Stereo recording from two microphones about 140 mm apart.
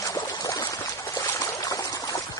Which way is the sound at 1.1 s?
25° left (ahead or behind).